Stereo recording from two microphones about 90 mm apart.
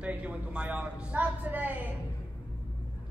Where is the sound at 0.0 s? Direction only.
15° right (ahead or behind).